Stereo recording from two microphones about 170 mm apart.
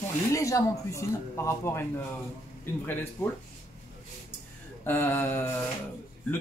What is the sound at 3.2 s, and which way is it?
Speech, 15° left (ahead or behind).